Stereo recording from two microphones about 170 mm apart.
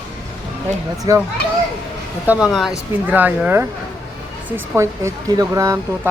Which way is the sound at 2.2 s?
5° right (ahead or behind).